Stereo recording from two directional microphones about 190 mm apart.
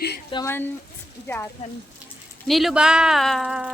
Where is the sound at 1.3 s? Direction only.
10° left (ahead or behind).